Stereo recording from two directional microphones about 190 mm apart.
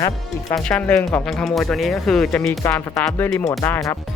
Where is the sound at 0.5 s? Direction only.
5° left (ahead or behind).